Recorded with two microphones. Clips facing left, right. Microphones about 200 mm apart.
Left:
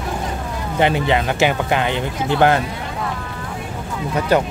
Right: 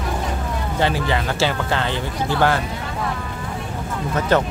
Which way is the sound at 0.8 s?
20° left (ahead or behind).